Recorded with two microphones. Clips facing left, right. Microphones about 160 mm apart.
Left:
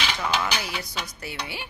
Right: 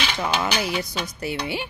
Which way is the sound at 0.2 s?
25° right (ahead or behind).